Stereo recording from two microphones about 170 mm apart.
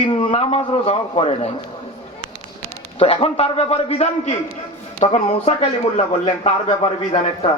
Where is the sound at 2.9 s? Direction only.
35° left (ahead or behind).